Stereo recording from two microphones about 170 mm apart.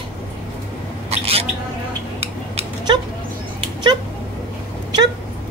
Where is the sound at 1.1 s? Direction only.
35° right (ahead or behind).